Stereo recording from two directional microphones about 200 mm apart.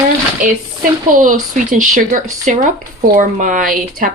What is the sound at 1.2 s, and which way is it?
Speech, 40° right (ahead or behind).